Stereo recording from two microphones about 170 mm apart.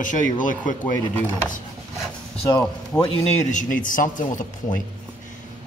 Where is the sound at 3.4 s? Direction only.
50° left (ahead or behind).